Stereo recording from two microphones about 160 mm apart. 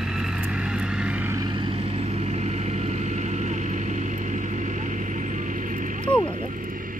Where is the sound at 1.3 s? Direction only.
30° right (ahead or behind); by 6.1 s 55° right (ahead or behind).